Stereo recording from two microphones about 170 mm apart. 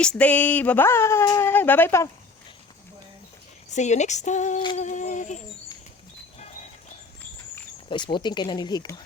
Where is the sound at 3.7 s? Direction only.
45° left (ahead or behind).